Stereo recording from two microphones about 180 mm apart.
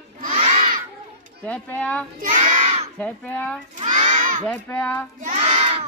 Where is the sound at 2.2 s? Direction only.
45° right (ahead or behind).